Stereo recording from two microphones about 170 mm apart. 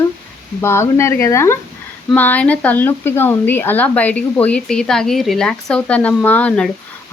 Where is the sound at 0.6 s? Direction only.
15° left (ahead or behind).